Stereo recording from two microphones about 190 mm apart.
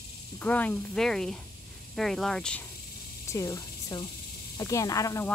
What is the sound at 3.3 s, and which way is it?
Speech, 15° left (ahead or behind).